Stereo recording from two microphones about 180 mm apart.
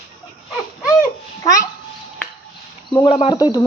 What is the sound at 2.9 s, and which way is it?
Speech, 25° left (ahead or behind).